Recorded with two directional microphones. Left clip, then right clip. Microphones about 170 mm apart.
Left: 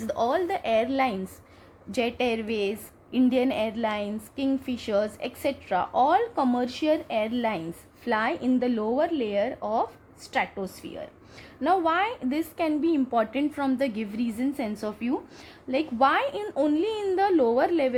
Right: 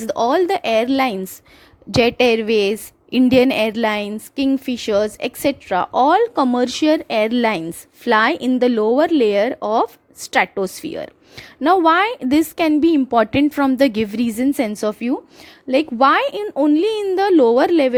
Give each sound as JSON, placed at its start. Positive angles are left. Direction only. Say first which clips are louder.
{"t": 0.0, "sound": "a woman's voice", "louder": "right 9 dB", "side_deg": -45}